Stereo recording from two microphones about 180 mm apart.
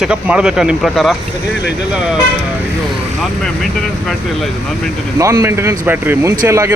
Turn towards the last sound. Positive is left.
turn(degrees=-15)  # may be behind; listen again after turning